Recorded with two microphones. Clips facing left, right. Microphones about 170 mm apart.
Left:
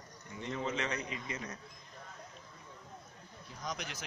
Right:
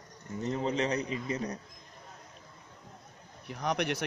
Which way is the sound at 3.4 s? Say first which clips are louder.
Right 11 dB; 70° right (ahead or behind).